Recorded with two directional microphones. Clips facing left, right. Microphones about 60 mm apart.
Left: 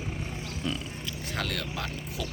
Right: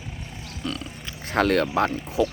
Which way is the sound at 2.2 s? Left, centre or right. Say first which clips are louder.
Right 15 dB; right.